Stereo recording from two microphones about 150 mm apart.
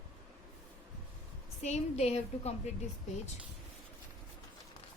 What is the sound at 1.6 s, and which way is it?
Speech, 45° left (ahead or behind).